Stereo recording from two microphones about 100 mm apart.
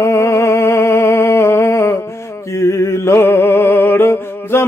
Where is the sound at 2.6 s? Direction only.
30° left (ahead or behind).